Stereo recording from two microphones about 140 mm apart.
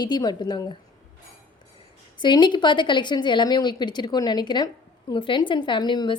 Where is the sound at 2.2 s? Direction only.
35° left (ahead or behind).